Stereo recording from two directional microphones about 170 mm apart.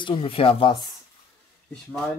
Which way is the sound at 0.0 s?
30° left (ahead or behind).